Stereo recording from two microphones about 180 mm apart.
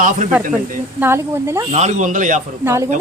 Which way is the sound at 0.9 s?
15° right (ahead or behind).